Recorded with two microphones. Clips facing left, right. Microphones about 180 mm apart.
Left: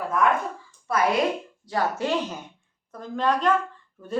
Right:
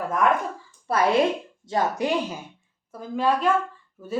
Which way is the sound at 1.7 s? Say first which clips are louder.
Right 1 dB; 15° right (ahead or behind).